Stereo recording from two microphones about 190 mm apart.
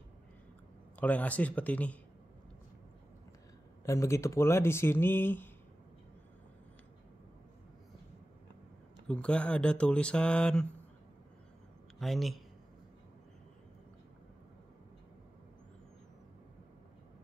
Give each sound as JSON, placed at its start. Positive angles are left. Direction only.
{"t": 0.9, "sound": "speech", "side_deg": 10}
{"t": 3.8, "sound": "speech", "side_deg": 15}
{"t": 9.0, "sound": "speech", "side_deg": 5}
{"t": 12.0, "sound": "speech", "side_deg": 0}